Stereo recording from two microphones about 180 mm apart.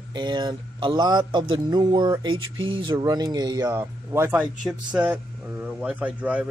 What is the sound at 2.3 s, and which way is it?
Speech, 90° right.